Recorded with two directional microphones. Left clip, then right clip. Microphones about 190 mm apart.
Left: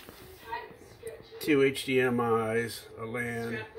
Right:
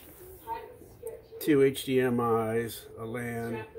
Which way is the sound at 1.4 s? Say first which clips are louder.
Right 1 dB; 20° right (ahead or behind).